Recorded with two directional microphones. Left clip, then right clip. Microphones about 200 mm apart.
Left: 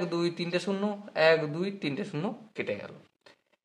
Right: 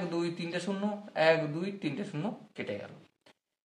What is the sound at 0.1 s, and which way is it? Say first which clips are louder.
A man's voice: left 4 dB; 45° left (ahead or behind).